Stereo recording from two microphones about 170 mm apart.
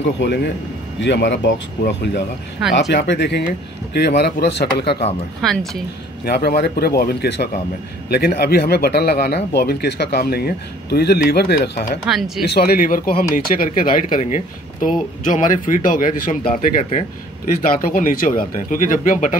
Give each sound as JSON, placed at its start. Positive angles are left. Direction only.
{"t": 0.0, "sound": "speech", "side_deg": 90}
{"t": 4.2, "sound": "speech", "side_deg": 75}
{"t": 5.4, "sound": "speech", "side_deg": 0}
{"t": 6.2, "sound": "speech", "side_deg": 65}
{"t": 12.1, "sound": "speech", "side_deg": -5}
{"t": 12.4, "sound": "speech", "side_deg": 65}